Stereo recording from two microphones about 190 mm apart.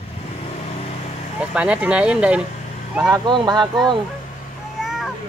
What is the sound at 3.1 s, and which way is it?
Speech, 25° right (ahead or behind).